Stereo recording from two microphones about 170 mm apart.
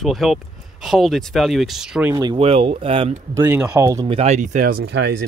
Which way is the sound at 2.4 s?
35° right (ahead or behind).